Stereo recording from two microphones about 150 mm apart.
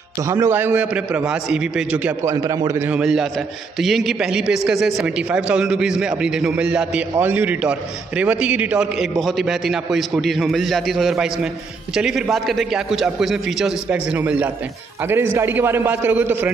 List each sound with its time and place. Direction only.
0.2 s a man's voice: 20° right (ahead or behind)
2.2 s a man's voice: 25° right (ahead or behind)
2.9 s a man's voice: 5° right (ahead or behind)